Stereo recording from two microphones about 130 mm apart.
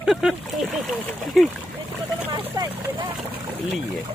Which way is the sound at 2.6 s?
35° right (ahead or behind).